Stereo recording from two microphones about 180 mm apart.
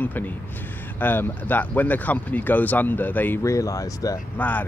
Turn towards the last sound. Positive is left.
turn(degrees=15)  # may be behind; listen again after turning